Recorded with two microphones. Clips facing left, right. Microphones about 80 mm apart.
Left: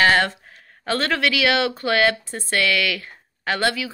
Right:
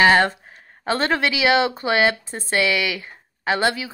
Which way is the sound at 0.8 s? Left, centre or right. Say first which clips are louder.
Right 1 dB; right.